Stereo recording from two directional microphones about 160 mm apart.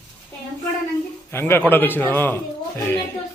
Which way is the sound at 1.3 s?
15° left (ahead or behind).